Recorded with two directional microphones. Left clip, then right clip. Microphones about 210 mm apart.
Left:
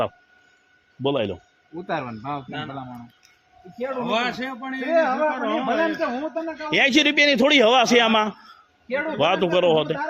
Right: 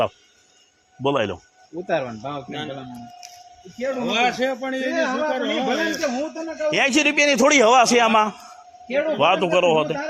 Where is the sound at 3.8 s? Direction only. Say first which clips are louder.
Right 3 dB; 30° left (ahead or behind).